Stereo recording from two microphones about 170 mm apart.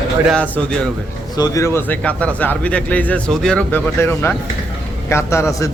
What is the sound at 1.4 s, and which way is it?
Speech, 20° left (ahead or behind).